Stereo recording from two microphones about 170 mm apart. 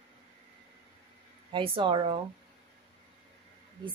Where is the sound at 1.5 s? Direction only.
30° right (ahead or behind).